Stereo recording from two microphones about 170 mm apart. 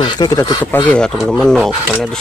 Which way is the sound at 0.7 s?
10° left (ahead or behind).